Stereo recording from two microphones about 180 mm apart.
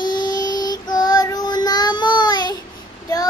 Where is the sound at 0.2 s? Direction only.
20° left (ahead or behind).